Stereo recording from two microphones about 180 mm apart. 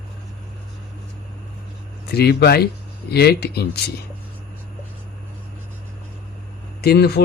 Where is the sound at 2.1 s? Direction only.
65° left (ahead or behind).